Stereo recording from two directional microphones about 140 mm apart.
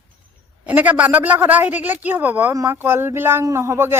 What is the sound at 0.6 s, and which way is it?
A woman's voice, 10° right (ahead or behind).